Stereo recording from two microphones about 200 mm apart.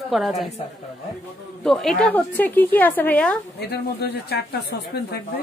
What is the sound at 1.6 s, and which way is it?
A woman's voice, centre (ahead or behind).